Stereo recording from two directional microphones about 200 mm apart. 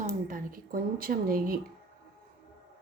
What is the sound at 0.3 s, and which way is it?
A woman's voice, 45° right (ahead or behind).